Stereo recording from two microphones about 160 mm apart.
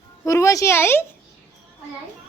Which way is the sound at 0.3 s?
20° left (ahead or behind).